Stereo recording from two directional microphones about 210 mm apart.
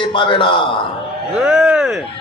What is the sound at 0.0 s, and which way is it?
Speech, 25° left (ahead or behind).